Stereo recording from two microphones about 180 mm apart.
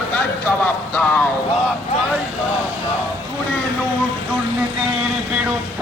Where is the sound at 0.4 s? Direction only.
10° left (ahead or behind).